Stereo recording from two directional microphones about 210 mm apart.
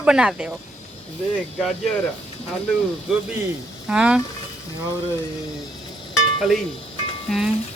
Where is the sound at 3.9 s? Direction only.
5° right (ahead or behind).